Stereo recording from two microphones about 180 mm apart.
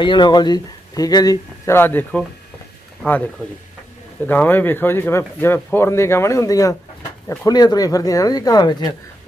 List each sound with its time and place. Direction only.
0.0 s speech: 25° left (ahead or behind); by 3.3 s 10° left (ahead or behind)
4.3 s speech: 10° left (ahead or behind)